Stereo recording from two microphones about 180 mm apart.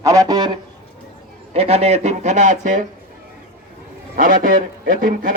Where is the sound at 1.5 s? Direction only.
35° right (ahead or behind).